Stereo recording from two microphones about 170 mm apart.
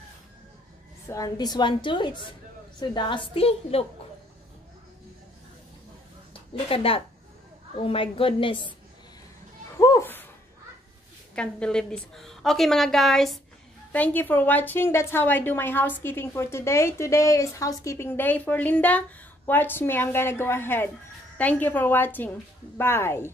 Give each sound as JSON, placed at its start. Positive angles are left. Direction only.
{"t": 1.0, "sound": "a woman's voice", "side_deg": 20}
{"t": 6.7, "sound": "a woman's voice", "side_deg": 35}
{"t": 9.8, "sound": "a sound", "side_deg": 20}
{"t": 11.3, "sound": "a woman's voice", "side_deg": 5}